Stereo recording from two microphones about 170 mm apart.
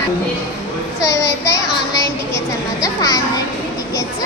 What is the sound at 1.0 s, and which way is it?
Speech, 15° left (ahead or behind).